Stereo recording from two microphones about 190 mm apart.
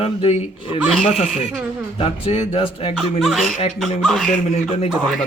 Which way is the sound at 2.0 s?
30° left (ahead or behind).